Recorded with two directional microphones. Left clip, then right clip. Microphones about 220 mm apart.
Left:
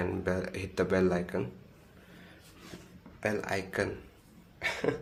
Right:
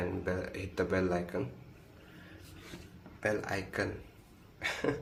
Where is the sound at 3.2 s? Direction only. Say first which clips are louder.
Left 1 dB; 30° left (ahead or behind).